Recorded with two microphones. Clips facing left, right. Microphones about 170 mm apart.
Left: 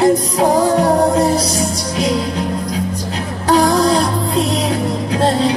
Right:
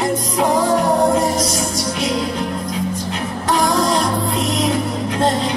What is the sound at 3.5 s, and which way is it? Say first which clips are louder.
Music: left 5 dB; 35° left (ahead or behind).